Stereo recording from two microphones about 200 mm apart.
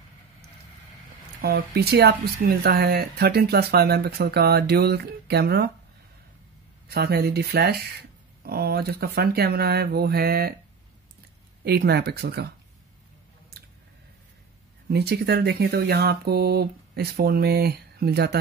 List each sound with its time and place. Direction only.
1.4 s speech: 50° right (ahead or behind)
6.9 s speech: 50° right (ahead or behind)
11.6 s speech: 55° right (ahead or behind)
13.5 s chewing: 55° right (ahead or behind)
14.9 s speech: 55° right (ahead or behind)